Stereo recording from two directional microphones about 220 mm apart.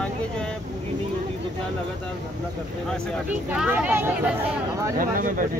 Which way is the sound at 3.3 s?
10° right (ahead or behind).